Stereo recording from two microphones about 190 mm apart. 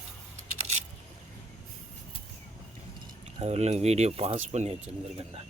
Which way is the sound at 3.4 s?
35° right (ahead or behind).